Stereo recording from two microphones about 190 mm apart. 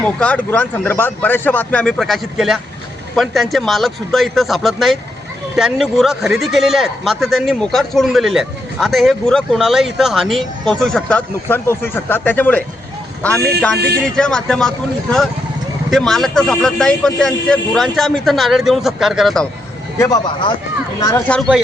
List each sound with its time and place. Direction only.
0.0 s speech: 5° left (ahead or behind)
15.9 s speech: centre (ahead or behind)
20.0 s speech: 20° left (ahead or behind)
21.2 s speech: centre (ahead or behind)